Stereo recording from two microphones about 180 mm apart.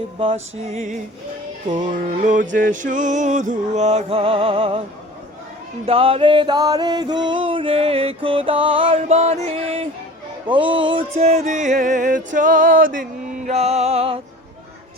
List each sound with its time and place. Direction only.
0.2 s music: 35° right (ahead or behind)
5.8 s music: 30° right (ahead or behind); by 13.1 s 50° right (ahead or behind)
13.4 s music: 35° right (ahead or behind)